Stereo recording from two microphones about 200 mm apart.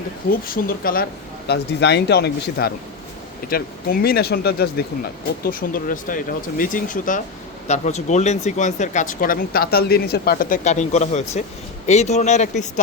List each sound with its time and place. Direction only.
0.3 s speech: 45° left (ahead or behind)